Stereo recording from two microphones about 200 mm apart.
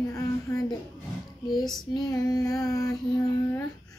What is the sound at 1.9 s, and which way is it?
Child singing, 20° left (ahead or behind).